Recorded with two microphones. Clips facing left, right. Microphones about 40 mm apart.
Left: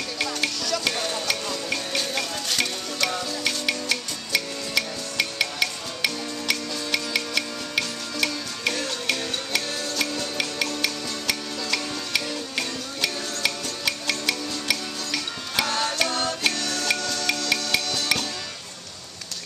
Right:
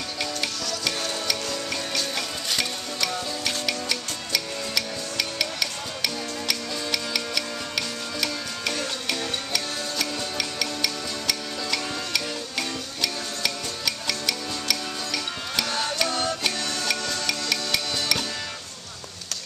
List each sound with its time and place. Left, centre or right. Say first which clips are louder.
0.8 s music: right 1 dB; left
10.3 s music: left 2 dB; centre
15.7 s music: even; centre
17.5 s music: left 2 dB; centre